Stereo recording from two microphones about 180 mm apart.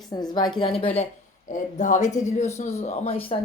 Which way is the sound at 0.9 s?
40° left (ahead or behind).